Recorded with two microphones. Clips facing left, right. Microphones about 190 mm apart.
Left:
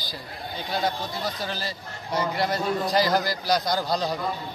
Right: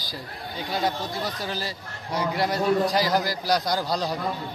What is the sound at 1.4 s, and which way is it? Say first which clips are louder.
A man's voice: right 1 dB; 5° right (ahead or behind).